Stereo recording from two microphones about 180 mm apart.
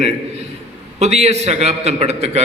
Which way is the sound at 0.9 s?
35° right (ahead or behind).